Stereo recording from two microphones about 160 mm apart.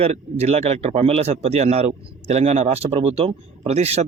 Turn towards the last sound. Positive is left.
turn(degrees=-40)  # may be behind; listen again after turning